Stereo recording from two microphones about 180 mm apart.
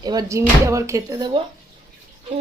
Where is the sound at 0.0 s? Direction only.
20° right (ahead or behind).